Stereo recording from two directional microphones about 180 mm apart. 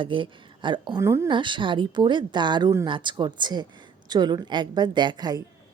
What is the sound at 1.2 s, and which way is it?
A woman's voice, 25° right (ahead or behind).